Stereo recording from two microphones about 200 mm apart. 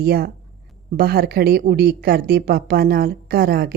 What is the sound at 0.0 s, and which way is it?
Speech, 50° right (ahead or behind).